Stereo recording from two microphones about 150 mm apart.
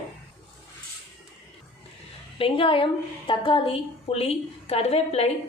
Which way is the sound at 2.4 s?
35° left (ahead or behind).